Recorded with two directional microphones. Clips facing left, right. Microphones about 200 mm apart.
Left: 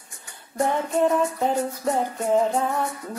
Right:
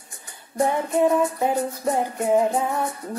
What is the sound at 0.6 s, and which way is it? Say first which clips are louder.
Music: right 1 dB; 15° right (ahead or behind).